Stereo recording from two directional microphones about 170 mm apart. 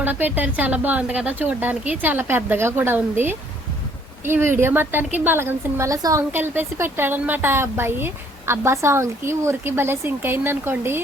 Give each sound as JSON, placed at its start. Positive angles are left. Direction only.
{"t": 0.0, "sound": "a woman's voice", "side_deg": -10}